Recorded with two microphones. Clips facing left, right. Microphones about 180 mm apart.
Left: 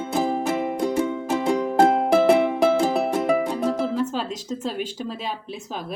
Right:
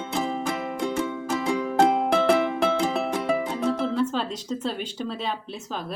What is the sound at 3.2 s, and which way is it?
Music, 10° left (ahead or behind).